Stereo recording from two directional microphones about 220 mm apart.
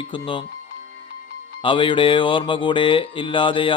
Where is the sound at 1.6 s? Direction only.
20° left (ahead or behind).